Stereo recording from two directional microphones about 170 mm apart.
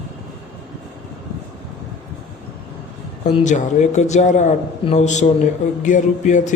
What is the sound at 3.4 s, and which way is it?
Speech, 45° left (ahead or behind).